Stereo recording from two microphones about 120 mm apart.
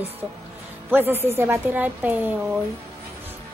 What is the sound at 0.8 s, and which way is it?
A woman's voice, 15° right (ahead or behind).